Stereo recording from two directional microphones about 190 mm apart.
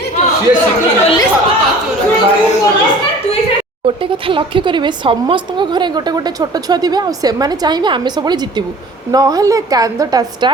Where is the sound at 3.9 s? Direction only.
30° right (ahead or behind).